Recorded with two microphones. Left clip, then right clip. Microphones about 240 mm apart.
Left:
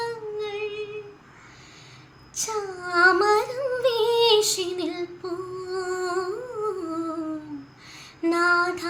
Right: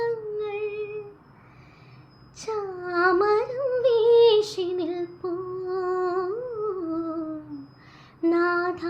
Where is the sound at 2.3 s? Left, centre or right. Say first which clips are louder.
Left 1 dB; centre.